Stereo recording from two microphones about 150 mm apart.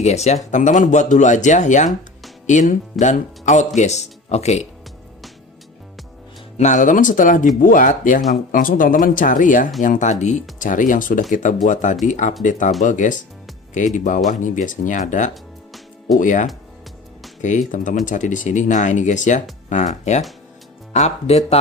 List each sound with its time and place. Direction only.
0.0 s speech: 50° left (ahead or behind)
6.6 s speech: 55° left (ahead or behind)